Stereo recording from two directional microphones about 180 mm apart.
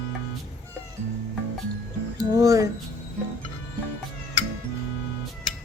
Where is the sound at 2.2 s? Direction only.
20° right (ahead or behind).